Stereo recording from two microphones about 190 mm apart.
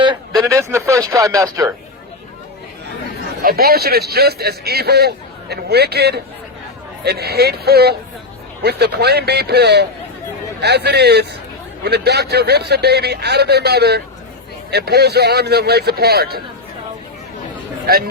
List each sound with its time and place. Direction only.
0.0 s a sound: 20° right (ahead or behind)
3.4 s a man's voice: 55° right (ahead or behind)
17.9 s speech: 50° right (ahead or behind)